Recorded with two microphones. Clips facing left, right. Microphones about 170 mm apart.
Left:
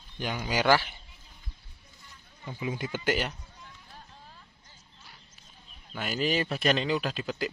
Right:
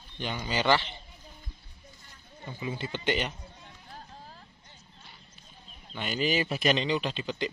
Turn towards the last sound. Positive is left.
turn(degrees=5)  # may be behind; listen again after turning